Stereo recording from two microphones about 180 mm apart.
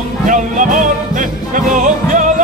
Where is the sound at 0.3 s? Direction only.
45° right (ahead or behind).